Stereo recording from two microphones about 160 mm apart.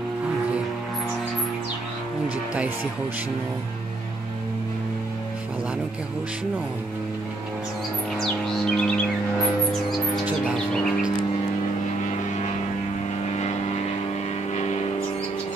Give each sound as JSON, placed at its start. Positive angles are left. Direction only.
{"t": 8.2, "sound": "music", "side_deg": 5}
{"t": 13.2, "sound": "vehicle", "side_deg": 45}
{"t": 14.5, "sound": "a sound", "side_deg": 45}